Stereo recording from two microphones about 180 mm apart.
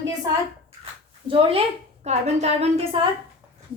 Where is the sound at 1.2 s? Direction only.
30° right (ahead or behind).